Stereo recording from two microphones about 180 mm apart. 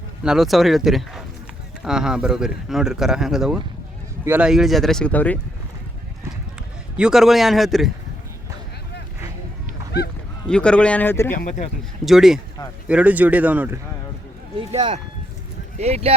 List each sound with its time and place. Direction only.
0.2 s speech: 5° right (ahead or behind)
6.9 s speech: 5° right (ahead or behind)
10.4 s speech: 5° left (ahead or behind)
11.3 s speech: 45° left (ahead or behind)
12.0 s speech: centre (ahead or behind)
14.7 s speech: 30° right (ahead or behind)